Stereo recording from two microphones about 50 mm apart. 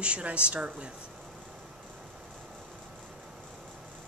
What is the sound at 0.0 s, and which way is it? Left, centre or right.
Speech, right.